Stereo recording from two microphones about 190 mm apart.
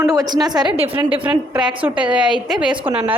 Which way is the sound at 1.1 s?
5° right (ahead or behind).